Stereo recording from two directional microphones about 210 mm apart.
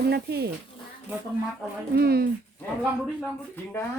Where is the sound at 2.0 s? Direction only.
45° right (ahead or behind).